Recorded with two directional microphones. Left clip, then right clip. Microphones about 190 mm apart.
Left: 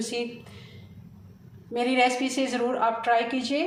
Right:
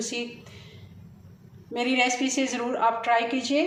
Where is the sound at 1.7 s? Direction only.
Centre (ahead or behind).